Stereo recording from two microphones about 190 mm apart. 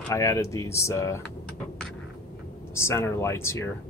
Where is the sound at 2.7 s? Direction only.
15° left (ahead or behind).